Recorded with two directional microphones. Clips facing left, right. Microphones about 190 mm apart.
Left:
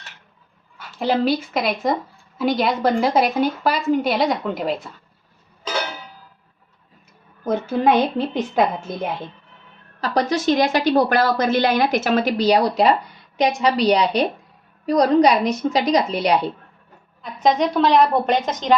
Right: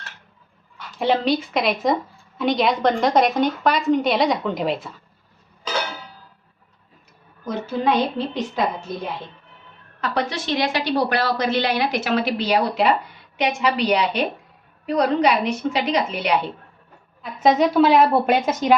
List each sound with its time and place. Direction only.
0.9 s a woman's voice: centre (ahead or behind)
7.4 s a woman's voice: 50° left (ahead or behind)
10.0 s a woman's voice: 40° left (ahead or behind)
17.2 s a woman's voice: 5° right (ahead or behind)